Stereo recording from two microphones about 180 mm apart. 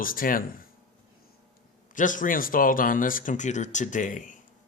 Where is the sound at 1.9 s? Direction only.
45° left (ahead or behind).